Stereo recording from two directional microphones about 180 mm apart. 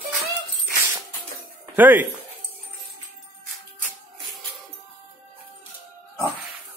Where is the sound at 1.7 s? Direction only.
10° right (ahead or behind).